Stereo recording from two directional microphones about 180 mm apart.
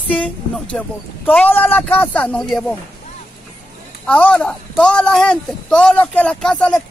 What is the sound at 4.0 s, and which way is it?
Speech, 5° left (ahead or behind).